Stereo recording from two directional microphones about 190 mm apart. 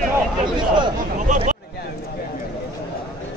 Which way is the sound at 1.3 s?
40° right (ahead or behind).